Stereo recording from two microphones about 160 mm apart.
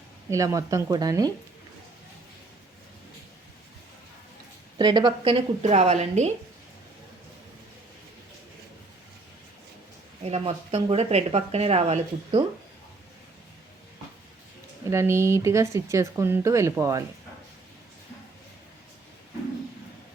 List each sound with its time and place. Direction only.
0.3 s speech: 20° right (ahead or behind)
4.8 s speech: 25° right (ahead or behind); by 6.3 s 45° right (ahead or behind)
10.2 s speech: 40° right (ahead or behind)
14.8 s speech: 15° right (ahead or behind)